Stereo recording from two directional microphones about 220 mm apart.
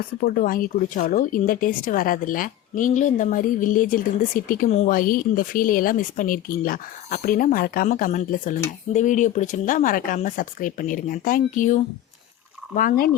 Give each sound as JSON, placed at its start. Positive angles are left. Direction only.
{"t": 0.2, "sound": "speech", "side_deg": 40}